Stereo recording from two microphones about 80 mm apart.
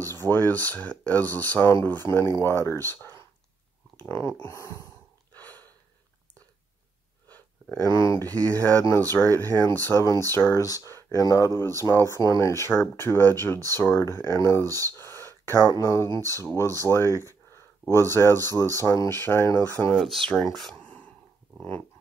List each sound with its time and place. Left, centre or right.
0.0 s speech: left
4.4 s speech: left
5.3 s a sound: left
7.7 s speech: left
8.5 s speech: left
10.6 s speech: left
11.6 s speech: left
12.1 s speech: left
14.9 s a sound: left
15.8 s speech: left
17.5 s a sound: left
18.1 s speech: left
19.9 s speech: centre